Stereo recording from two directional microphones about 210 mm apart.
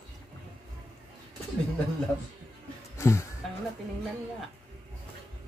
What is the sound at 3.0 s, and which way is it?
Music, 15° left (ahead or behind).